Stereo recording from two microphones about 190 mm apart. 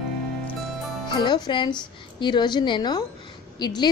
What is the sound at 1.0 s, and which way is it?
A woman's voice, 25° left (ahead or behind).